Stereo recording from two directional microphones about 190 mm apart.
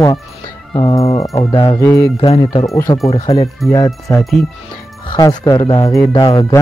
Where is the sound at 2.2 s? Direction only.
30° left (ahead or behind).